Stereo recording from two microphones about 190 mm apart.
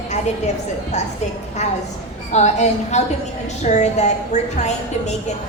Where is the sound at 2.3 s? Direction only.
35° left (ahead or behind).